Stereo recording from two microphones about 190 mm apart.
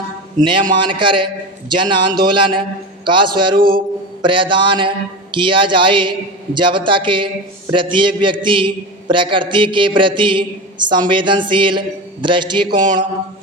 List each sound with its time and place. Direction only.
0.7 s a man's voice: 25° right (ahead or behind)